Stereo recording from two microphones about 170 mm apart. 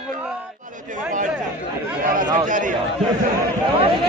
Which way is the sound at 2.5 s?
50° right (ahead or behind).